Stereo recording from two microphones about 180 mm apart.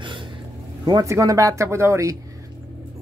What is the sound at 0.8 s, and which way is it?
Speech, 20° right (ahead or behind).